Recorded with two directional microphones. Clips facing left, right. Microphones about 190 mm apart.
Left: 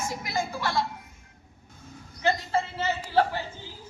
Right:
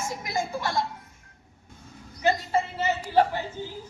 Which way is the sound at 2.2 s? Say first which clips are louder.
Right 2 dB; 15° right (ahead or behind).